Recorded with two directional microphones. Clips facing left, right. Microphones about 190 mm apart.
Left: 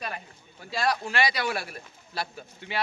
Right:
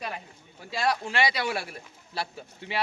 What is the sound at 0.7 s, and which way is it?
Speech, 25° right (ahead or behind).